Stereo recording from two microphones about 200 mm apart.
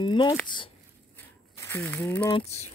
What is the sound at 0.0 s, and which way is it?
Speech, 25° left (ahead or behind).